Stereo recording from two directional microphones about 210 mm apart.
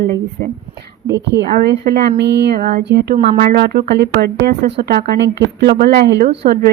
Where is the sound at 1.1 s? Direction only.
55° right (ahead or behind).